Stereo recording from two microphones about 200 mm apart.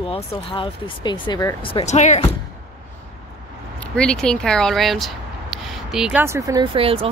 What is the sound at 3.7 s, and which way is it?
Speech, 5° left (ahead or behind).